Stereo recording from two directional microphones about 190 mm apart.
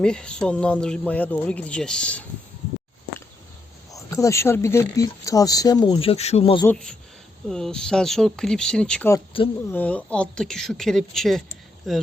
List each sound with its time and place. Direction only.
0.0 s speech: 5° left (ahead or behind)
3.9 s speech: 15° left (ahead or behind)
6.7 s speech: 5° left (ahead or behind)